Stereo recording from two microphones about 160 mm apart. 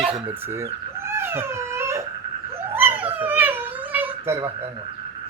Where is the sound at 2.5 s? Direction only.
15° right (ahead or behind).